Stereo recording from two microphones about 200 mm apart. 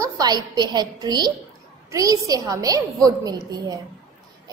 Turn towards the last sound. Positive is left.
turn(degrees=-20)  # may be behind; listen again after turning